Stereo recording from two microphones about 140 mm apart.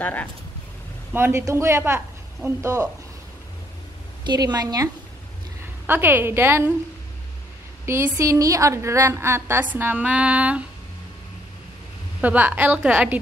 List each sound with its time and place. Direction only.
0.0 s speech: 10° left (ahead or behind)
1.1 s speech: 20° right (ahead or behind)
4.3 s speech: 30° right (ahead or behind)
5.9 s a woman's voice: 15° right (ahead or behind)
7.8 s a woman's voice: 20° right (ahead or behind)
12.2 s a woman's voice: 10° right (ahead or behind)